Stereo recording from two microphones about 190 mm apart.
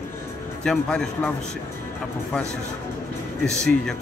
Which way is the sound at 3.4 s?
5° left (ahead or behind).